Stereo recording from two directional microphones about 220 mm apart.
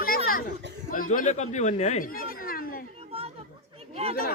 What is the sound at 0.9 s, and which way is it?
Speech, 40° left (ahead or behind).